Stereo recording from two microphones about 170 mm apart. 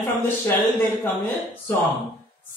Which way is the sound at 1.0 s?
10° left (ahead or behind).